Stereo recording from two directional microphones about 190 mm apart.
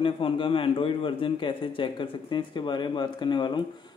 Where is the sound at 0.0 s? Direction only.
25° left (ahead or behind).